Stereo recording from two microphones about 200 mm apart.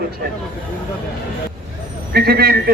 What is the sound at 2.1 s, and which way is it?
Speech, 50° right (ahead or behind).